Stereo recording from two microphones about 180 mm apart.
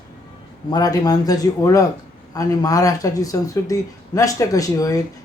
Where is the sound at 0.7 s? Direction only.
20° left (ahead or behind).